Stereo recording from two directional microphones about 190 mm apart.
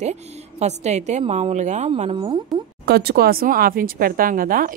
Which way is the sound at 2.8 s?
55° right (ahead or behind).